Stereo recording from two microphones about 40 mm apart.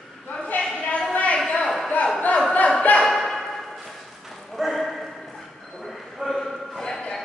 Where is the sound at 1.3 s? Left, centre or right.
Centre.